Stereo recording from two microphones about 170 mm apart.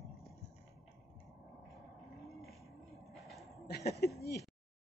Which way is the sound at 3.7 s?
70° left (ahead or behind).